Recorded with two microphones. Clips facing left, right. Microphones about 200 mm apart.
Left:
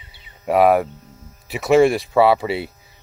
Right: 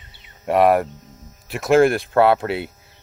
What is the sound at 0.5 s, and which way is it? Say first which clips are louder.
Speech: left 1 dB; centre (ahead or behind).